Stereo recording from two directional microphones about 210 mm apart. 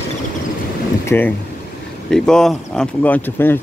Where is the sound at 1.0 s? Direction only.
10° left (ahead or behind).